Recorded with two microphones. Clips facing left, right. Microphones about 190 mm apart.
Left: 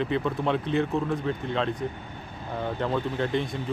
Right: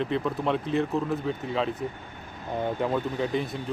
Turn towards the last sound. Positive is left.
turn(degrees=0)  # may be behind; listen again after turning